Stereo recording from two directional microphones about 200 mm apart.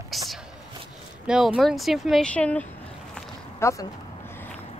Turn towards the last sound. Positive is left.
turn(degrees=15)  # may be behind; listen again after turning